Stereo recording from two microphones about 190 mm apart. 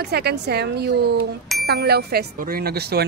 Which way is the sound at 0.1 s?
60° right (ahead or behind).